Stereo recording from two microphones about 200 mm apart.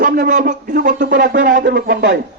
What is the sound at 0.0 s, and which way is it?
Speech, 40° right (ahead or behind).